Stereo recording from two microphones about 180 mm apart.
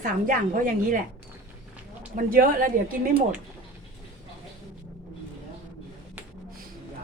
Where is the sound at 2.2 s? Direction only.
50° right (ahead or behind).